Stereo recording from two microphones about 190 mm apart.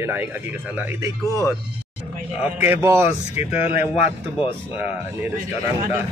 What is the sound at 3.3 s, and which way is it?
Speech, 30° left (ahead or behind).